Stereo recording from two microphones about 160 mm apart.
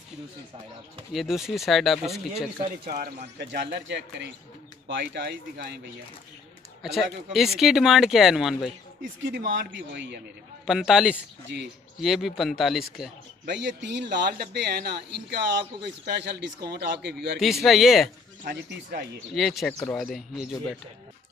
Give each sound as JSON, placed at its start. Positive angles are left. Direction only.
{"t": 1.1, "sound": "speech", "side_deg": 0}
{"t": 2.9, "sound": "a man's voice", "side_deg": -60}
{"t": 6.8, "sound": "speech", "side_deg": 0}
{"t": 9.2, "sound": "a man's voice", "side_deg": -90}
{"t": 10.7, "sound": "speech", "side_deg": -5}
{"t": 11.5, "sound": "a man's voice", "side_deg": -90}
{"t": 12.0, "sound": "speech", "side_deg": 0}
{"t": 13.5, "sound": "a man's voice", "side_deg": -90}
{"t": 17.6, "sound": "speech", "side_deg": 0}
{"t": 18.4, "sound": "speech", "side_deg": -65}
{"t": 19.3, "sound": "speech", "side_deg": 0}
{"t": 19.8, "sound": "speech", "side_deg": 10}
{"t": 20.1, "sound": "speech", "side_deg": 0}